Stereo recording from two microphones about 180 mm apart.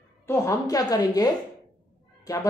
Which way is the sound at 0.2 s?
15° left (ahead or behind).